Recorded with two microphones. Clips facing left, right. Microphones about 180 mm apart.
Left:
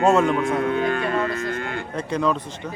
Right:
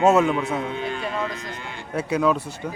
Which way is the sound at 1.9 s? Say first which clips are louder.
Right 3 dB; 5° right (ahead or behind).